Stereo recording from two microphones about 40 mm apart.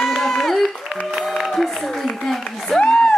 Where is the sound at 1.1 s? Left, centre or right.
Centre.